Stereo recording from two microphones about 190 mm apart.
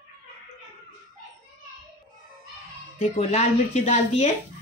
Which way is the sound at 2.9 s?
35° left (ahead or behind).